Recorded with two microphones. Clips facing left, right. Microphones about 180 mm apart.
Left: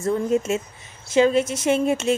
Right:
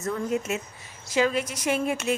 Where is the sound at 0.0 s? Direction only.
25° left (ahead or behind).